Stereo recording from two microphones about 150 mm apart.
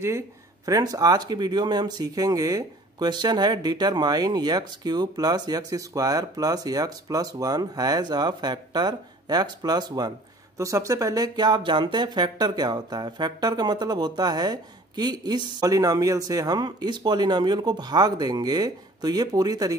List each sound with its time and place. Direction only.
0.7 s speech: 25° right (ahead or behind)